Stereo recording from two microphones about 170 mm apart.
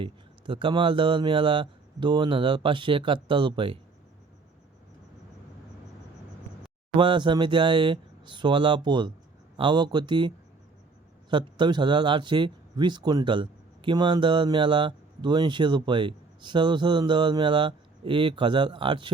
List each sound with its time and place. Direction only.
0.0 s speech: 30° right (ahead or behind)
6.9 s speech: 30° right (ahead or behind)